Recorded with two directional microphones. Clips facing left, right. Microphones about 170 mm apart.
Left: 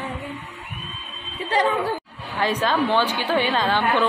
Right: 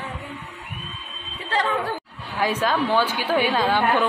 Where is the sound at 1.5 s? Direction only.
20° left (ahead or behind).